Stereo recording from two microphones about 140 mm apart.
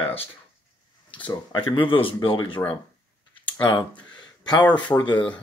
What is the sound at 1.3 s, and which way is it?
Speech, 30° left (ahead or behind).